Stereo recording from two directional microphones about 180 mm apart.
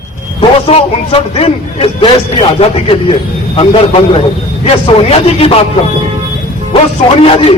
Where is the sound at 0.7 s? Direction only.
30° left (ahead or behind).